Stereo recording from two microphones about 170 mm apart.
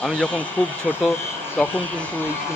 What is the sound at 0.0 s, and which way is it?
Speech, 5° left (ahead or behind).